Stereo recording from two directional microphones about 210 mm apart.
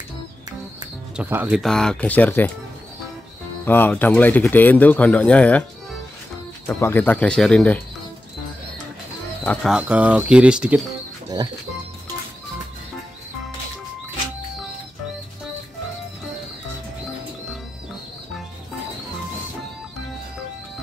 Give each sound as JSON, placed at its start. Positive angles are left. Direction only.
{"t": 1.1, "sound": "speech", "side_deg": -10}
{"t": 3.6, "sound": "speech", "side_deg": 10}
{"t": 6.7, "sound": "speech", "side_deg": 10}
{"t": 9.4, "sound": "speech", "side_deg": 5}
{"t": 11.4, "sound": "speech", "side_deg": -20}